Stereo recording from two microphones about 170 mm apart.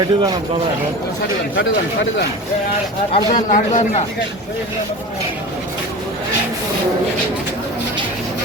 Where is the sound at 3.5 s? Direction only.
45° left (ahead or behind).